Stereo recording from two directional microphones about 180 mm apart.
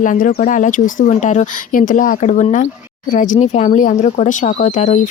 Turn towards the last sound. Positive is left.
turn(degrees=40)  # may be behind; listen again after turning